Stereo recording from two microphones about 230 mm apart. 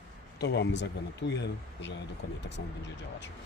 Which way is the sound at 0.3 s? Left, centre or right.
Left.